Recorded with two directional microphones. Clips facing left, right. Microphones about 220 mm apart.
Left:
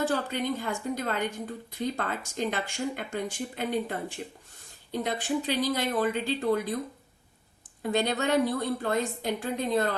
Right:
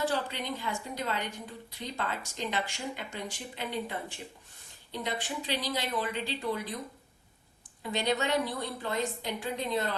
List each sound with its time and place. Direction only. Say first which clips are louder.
0.0 s a woman's voice: left 4 dB; 50° left (ahead or behind)
7.8 s a woman's voice: left 3 dB; 50° left (ahead or behind)